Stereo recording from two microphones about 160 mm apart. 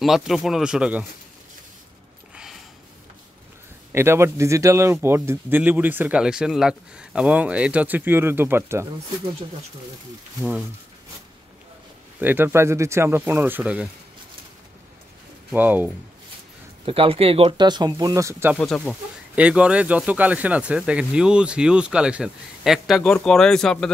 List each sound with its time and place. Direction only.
0.0 s speech: centre (ahead or behind)
3.9 s speech: 15° right (ahead or behind)
12.2 s speech: 10° right (ahead or behind)
15.5 s speech: 10° right (ahead or behind)
16.8 s speech: 35° right (ahead or behind); by 18.5 s 20° right (ahead or behind)
18.6 s speech: 5° left (ahead or behind)
19.3 s speech: 5° right (ahead or behind)